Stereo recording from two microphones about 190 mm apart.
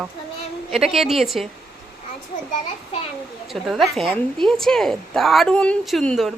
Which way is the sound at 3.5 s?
Centre (ahead or behind).